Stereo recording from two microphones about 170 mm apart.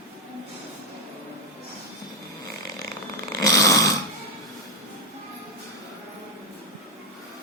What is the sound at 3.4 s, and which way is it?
Snoring, 20° left (ahead or behind).